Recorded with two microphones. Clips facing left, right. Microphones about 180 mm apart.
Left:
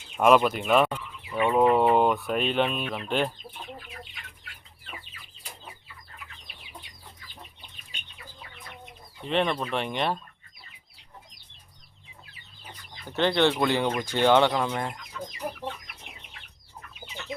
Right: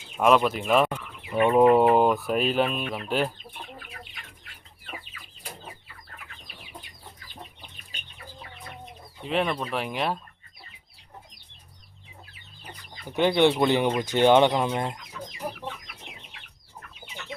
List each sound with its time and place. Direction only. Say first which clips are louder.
0.2 s speech: left 1 dB; centre (ahead or behind)
9.2 s speech: even; 5° right (ahead or behind)
13.1 s speech: right 2 dB; 10° right (ahead or behind)